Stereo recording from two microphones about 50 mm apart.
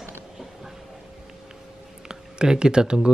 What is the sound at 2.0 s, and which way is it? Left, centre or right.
Speech, centre.